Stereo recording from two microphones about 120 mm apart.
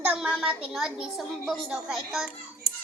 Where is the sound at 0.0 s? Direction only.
10° right (ahead or behind).